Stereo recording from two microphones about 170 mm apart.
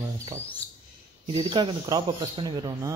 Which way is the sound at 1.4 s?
25° right (ahead or behind).